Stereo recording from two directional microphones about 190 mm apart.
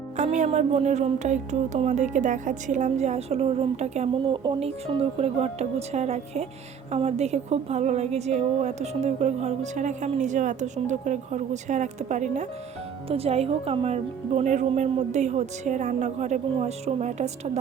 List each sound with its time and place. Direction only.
0.2 s speech: 35° right (ahead or behind)